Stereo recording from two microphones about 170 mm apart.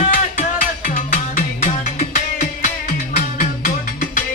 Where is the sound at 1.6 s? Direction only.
50° left (ahead or behind).